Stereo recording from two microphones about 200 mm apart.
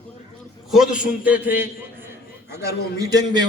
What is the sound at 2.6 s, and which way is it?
Speech, 20° right (ahead or behind).